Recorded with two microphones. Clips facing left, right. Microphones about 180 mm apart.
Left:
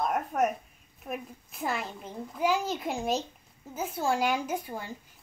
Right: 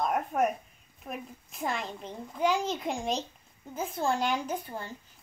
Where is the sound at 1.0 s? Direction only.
5° left (ahead or behind).